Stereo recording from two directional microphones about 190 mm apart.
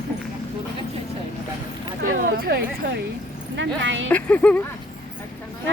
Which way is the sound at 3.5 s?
80° right.